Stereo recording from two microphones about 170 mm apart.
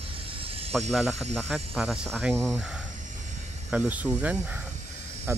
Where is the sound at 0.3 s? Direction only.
35° right (ahead or behind).